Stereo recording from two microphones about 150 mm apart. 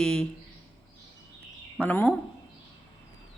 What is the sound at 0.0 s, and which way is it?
Speech, 5° left (ahead or behind).